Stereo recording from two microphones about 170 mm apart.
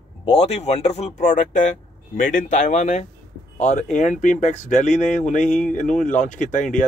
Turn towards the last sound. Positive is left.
turn(degrees=50)  # may be behind; listen again after turning